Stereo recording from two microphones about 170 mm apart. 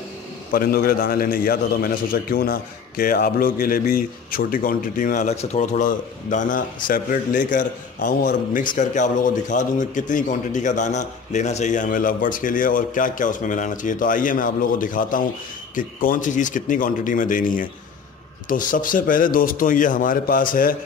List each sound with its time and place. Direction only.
0.5 s a man's voice: 60° left (ahead or behind)